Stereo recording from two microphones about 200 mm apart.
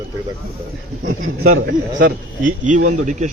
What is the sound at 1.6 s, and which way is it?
Speech, 60° right (ahead or behind).